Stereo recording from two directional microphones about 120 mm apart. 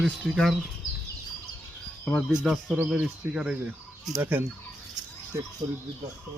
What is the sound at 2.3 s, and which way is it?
Speech, 5° right (ahead or behind).